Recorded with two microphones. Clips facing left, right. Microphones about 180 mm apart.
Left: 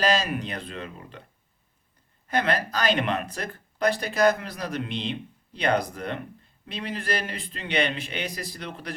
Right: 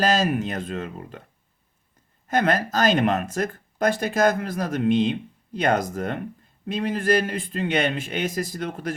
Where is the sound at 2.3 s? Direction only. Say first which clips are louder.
Right 4 dB; 45° right (ahead or behind).